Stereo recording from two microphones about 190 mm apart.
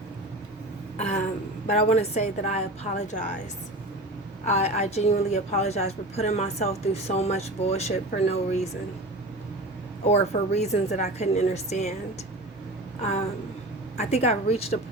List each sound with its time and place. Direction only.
0.9 s a sound: 35° left (ahead or behind)
1.6 s speech: 35° left (ahead or behind)
4.4 s speech: 35° left (ahead or behind)
10.0 s speech: 35° left (ahead or behind)
13.0 s speech: 35° left (ahead or behind)